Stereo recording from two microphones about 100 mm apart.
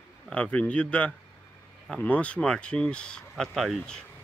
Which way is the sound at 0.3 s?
10° left (ahead or behind).